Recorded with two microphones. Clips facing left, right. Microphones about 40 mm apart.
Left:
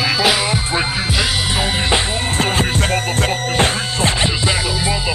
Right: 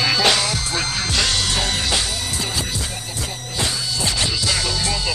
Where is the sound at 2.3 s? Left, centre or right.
Left.